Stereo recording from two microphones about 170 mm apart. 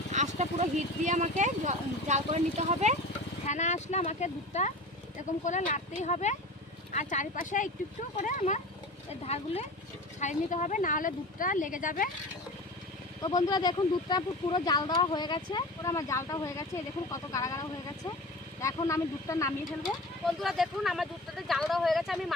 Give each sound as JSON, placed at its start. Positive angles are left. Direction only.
{"t": 0.1, "sound": "speech", "side_deg": -45}
{"t": 3.4, "sound": "speech", "side_deg": 45}
{"t": 13.2, "sound": "speech", "side_deg": 25}
{"t": 19.8, "sound": "speech", "side_deg": 0}